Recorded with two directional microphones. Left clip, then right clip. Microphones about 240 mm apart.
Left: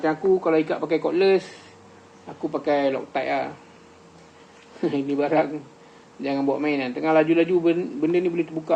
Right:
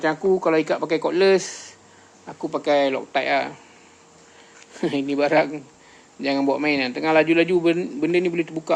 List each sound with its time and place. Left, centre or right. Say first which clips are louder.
0.0 s a man's voice: right 1 dB; right
4.8 s a man's voice: right 2 dB; right